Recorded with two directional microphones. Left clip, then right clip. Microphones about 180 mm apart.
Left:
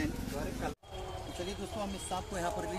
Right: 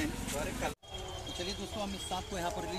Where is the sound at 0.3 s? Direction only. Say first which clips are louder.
Right 2 dB; 45° left (ahead or behind).